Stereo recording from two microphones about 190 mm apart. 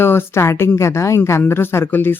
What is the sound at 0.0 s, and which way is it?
Speech, 10° left (ahead or behind).